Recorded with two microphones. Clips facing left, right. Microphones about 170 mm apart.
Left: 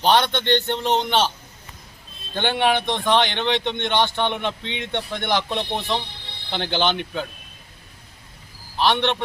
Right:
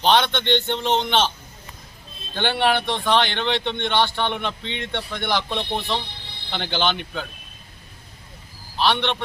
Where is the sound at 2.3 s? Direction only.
15° left (ahead or behind).